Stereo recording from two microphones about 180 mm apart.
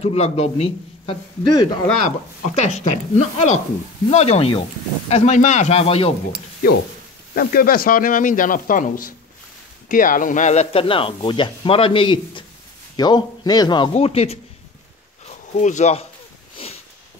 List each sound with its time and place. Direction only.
0.0 s speech: 35° left (ahead or behind)
2.0 s speech: 40° left (ahead or behind)
7.3 s speech: 55° left (ahead or behind); by 16.1 s 40° left (ahead or behind)
16.5 s sniff: 35° left (ahead or behind)